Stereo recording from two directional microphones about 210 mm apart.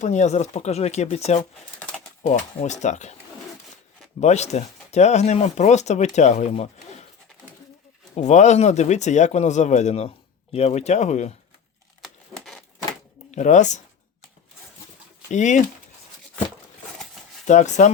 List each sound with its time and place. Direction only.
0.0 s speech: 35° left (ahead or behind)
4.2 s speech: 30° left (ahead or behind)
8.1 s speech: 35° left (ahead or behind)
12.0 s a sound: centre (ahead or behind)
13.3 s speech: 35° left (ahead or behind)
15.3 s speech: 35° left (ahead or behind)
17.4 s speech: 35° left (ahead or behind)